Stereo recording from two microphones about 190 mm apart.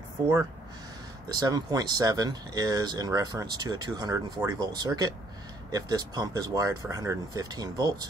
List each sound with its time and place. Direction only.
1.3 s speech: 20° right (ahead or behind)